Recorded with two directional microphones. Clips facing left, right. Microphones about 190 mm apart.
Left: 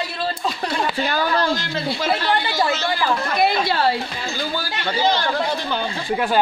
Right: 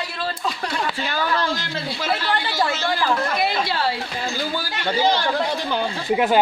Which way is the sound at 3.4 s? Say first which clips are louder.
Left 4 dB; 50° left (ahead or behind).